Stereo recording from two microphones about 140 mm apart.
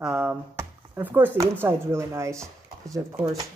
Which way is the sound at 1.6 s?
15° right (ahead or behind).